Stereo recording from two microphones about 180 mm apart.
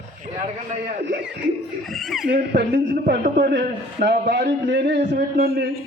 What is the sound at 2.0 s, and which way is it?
Speech, centre (ahead or behind).